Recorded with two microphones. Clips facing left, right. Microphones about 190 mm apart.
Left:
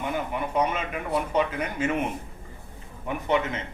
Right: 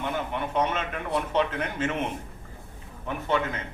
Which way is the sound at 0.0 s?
10° left (ahead or behind).